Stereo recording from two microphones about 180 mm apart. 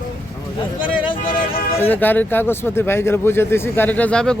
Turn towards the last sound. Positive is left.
turn(degrees=5)  # may be behind; listen again after turning